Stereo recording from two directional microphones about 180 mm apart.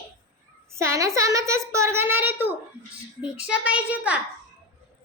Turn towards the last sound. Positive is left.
turn(degrees=-5)  # may be behind; listen again after turning